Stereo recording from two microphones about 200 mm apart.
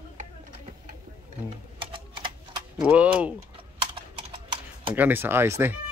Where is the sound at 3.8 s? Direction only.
25° right (ahead or behind).